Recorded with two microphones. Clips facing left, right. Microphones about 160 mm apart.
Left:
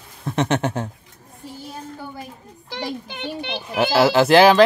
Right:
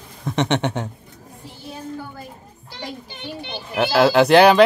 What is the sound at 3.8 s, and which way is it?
Speech, 5° left (ahead or behind).